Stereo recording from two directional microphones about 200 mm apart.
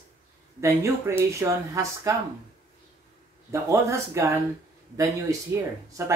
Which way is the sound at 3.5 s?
15° right (ahead or behind).